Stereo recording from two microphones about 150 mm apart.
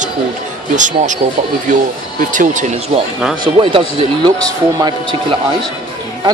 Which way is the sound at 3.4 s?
35° right (ahead or behind).